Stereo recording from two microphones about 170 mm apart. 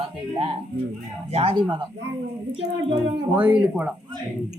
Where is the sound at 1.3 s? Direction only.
35° right (ahead or behind).